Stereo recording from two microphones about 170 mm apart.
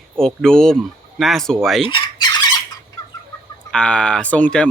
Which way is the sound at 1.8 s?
30° left (ahead or behind).